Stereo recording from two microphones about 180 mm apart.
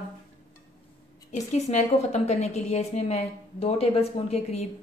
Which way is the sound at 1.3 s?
40° left (ahead or behind).